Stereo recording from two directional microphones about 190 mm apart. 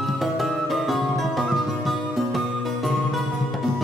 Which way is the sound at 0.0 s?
Centre (ahead or behind).